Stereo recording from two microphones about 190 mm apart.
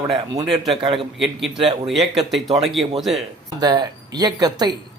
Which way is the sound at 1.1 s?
Centre (ahead or behind).